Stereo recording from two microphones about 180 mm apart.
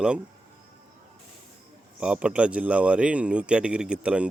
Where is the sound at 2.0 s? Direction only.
5° right (ahead or behind).